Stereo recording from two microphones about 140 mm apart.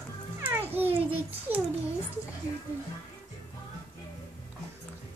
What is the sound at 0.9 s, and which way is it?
Speech, 40° right (ahead or behind).